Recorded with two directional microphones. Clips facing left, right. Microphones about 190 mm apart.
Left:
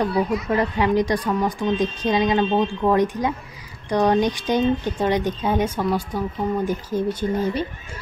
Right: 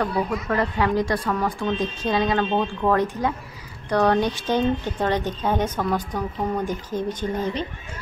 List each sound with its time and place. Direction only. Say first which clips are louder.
0.5 s speech: left 2 dB; 15° left (ahead or behind)